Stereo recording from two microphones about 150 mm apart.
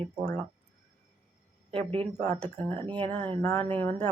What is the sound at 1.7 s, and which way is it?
Speech, 40° right (ahead or behind).